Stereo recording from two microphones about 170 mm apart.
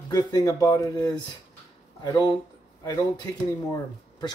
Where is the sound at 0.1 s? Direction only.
20° left (ahead or behind).